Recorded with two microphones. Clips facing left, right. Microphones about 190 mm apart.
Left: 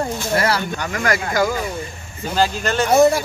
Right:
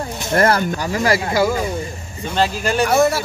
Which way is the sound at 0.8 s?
30° right (ahead or behind).